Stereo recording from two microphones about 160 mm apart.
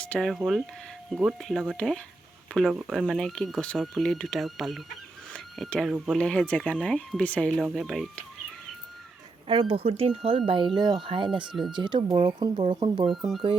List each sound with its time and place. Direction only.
0.0 s speech: 5° left (ahead or behind)
9.5 s speech: 30° right (ahead or behind)
13.1 s speech: centre (ahead or behind)